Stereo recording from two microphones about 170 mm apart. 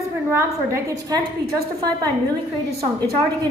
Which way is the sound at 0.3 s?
15° right (ahead or behind).